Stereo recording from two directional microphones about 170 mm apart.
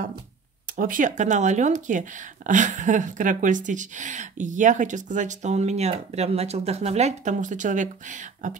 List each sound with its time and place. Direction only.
0.7 s speech: 55° right (ahead or behind)